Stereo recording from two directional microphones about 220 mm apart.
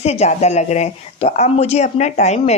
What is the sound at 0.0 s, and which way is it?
Speech, 30° left (ahead or behind).